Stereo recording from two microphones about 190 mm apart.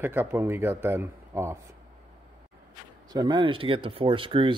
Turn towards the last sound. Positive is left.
turn(degrees=-25)  # may be behind; listen again after turning